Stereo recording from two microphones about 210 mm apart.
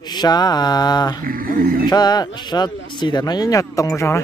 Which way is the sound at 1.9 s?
20° left (ahead or behind).